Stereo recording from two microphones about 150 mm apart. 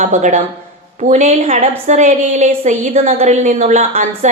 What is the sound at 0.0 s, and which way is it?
A woman's voice, 55° right (ahead or behind).